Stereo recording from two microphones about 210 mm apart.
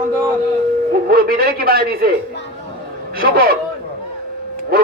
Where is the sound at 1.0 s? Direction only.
45° right (ahead or behind).